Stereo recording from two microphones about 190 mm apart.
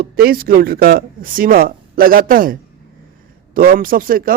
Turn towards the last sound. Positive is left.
turn(degrees=-50)  # may be behind; listen again after turning